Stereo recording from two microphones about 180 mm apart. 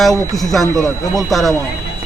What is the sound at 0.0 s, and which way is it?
A man's voice, centre (ahead or behind).